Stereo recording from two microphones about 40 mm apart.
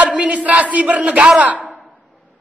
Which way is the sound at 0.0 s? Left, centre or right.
Right.